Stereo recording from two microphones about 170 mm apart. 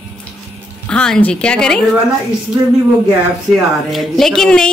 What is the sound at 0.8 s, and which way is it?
Speech, 5° left (ahead or behind).